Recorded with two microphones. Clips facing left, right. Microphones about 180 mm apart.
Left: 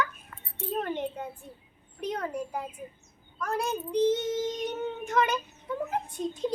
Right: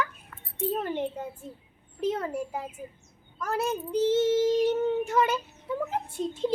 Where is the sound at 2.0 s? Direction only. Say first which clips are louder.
Right 3 dB; 5° right (ahead or behind).